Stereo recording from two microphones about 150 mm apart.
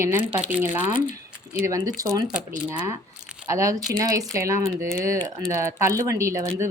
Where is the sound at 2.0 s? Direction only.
25° right (ahead or behind).